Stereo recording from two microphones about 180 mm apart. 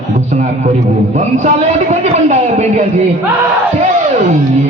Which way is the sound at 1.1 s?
40° right (ahead or behind).